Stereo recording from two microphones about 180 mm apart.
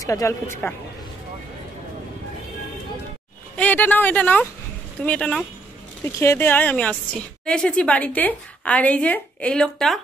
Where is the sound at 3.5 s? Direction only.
10° left (ahead or behind).